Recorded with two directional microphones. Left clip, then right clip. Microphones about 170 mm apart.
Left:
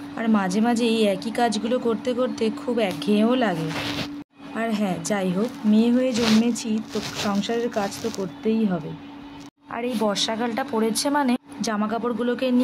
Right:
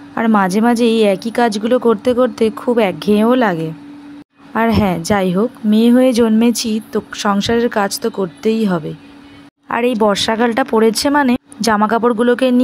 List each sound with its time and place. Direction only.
0.1 s speech: 55° right (ahead or behind)
4.6 s speech: 60° right (ahead or behind)
9.7 s speech: 50° right (ahead or behind)
11.6 s speech: 55° right (ahead or behind)